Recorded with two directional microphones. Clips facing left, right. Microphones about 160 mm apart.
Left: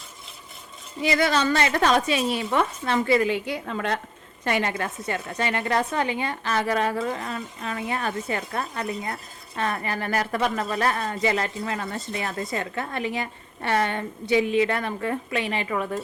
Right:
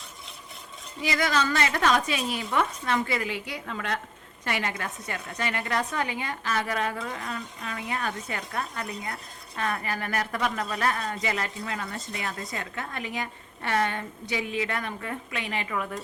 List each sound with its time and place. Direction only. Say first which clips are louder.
1.0 s speech: left 4 dB; 30° left (ahead or behind)